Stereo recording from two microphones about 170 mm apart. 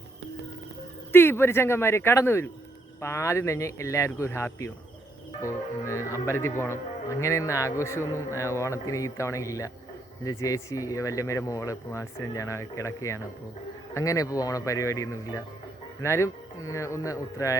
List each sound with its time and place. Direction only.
1.1 s speech: 15° left (ahead or behind)